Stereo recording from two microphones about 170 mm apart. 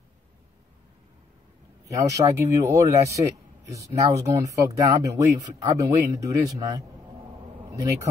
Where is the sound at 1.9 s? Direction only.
20° right (ahead or behind).